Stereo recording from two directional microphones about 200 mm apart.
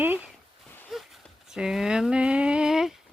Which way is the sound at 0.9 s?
Centre (ahead or behind).